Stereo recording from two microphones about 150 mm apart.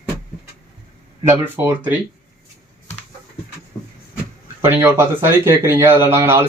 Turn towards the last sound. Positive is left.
turn(degrees=-15)  # may be behind; listen again after turning